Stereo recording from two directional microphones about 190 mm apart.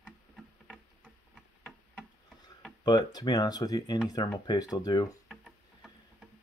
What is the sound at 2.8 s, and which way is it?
Speech, 20° left (ahead or behind).